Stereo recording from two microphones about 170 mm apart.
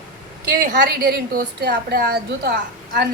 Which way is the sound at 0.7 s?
70° right (ahead or behind).